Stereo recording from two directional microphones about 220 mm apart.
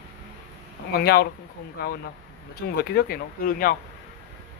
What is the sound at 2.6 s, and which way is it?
Speech, 45° left (ahead or behind).